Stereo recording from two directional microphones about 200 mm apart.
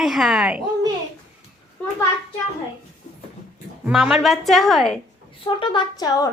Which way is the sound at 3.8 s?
Centre (ahead or behind).